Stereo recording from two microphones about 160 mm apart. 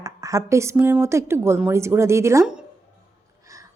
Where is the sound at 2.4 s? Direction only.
5° right (ahead or behind).